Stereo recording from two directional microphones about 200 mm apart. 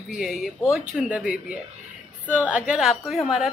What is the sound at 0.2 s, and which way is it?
A woman's voice, centre (ahead or behind).